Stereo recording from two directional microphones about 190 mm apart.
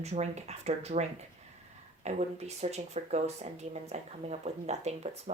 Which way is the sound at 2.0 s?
35° right (ahead or behind).